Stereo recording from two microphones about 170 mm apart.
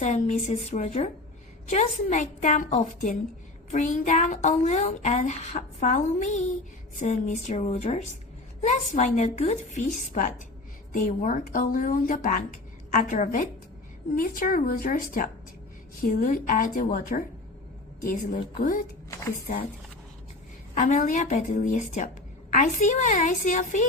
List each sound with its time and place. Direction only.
0.0 s a woman's voice: 45° left (ahead or behind)
20.7 s a woman's voice: 50° left (ahead or behind)